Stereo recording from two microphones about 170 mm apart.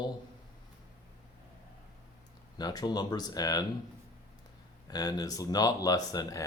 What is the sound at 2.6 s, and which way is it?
Speech, 25° left (ahead or behind).